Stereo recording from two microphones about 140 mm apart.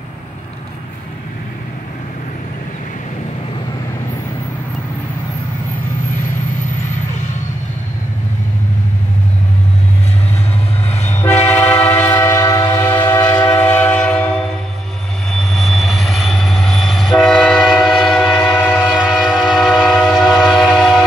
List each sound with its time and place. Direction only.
10.9 s train: 50° left (ahead or behind)
11.2 s train: 15° left (ahead or behind)
15.3 s train: centre (ahead or behind)